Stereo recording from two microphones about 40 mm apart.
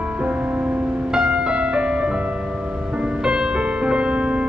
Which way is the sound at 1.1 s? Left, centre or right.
Right.